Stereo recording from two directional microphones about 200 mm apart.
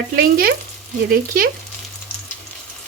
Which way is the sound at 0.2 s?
45° right (ahead or behind).